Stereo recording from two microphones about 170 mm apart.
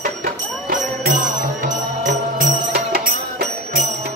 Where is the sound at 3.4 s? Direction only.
70° right (ahead or behind).